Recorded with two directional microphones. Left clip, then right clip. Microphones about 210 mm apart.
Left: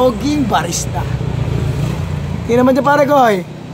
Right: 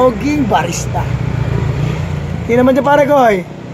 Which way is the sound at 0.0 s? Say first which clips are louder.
Right 2 dB; 10° right (ahead or behind).